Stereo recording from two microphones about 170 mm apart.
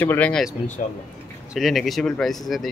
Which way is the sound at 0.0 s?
10° left (ahead or behind).